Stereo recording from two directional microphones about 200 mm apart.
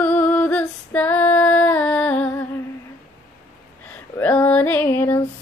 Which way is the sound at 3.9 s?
5° left (ahead or behind).